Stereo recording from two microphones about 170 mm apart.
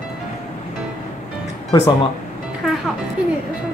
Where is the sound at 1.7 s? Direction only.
20° left (ahead or behind).